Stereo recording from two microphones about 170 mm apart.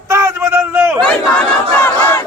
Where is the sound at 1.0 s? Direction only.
10° left (ahead or behind).